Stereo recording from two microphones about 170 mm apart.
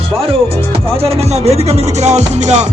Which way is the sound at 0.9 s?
35° right (ahead or behind).